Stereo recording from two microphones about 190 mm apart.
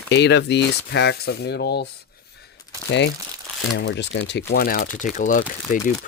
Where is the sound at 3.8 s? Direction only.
65° left (ahead or behind).